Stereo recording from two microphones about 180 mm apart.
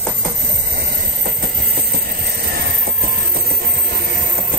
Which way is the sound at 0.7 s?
60° right (ahead or behind).